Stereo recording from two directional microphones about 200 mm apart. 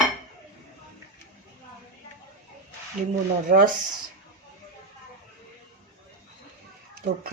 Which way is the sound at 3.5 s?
40° right (ahead or behind).